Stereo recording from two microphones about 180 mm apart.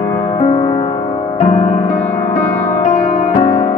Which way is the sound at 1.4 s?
45° left (ahead or behind).